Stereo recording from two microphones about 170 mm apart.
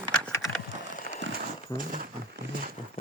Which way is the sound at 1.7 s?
50° right (ahead or behind).